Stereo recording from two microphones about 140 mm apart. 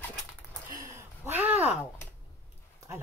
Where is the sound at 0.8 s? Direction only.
20° right (ahead or behind).